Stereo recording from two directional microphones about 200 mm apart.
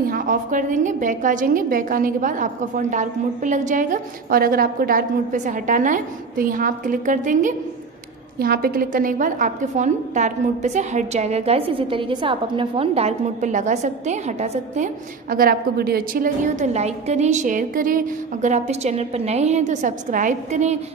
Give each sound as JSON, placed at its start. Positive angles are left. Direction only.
{"t": 0.0, "sound": "a woman's voice", "side_deg": -45}